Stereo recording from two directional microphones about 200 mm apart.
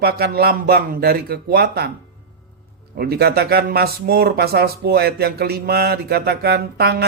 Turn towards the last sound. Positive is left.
turn(degrees=-55)  # may be behind; listen again after turning